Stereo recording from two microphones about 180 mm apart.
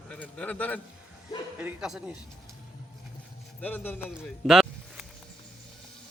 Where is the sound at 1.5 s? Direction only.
5° right (ahead or behind).